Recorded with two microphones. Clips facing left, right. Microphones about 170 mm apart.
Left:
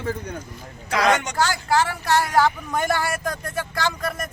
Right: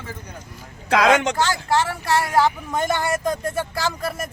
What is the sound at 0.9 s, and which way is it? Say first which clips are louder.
Speech: right 4 dB; 90° right.